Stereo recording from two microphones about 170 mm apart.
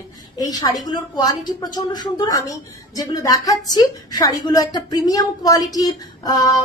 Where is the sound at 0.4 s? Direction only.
20° left (ahead or behind).